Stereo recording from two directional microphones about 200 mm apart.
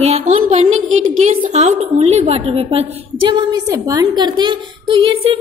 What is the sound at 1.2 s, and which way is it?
A woman's voice, 35° right (ahead or behind).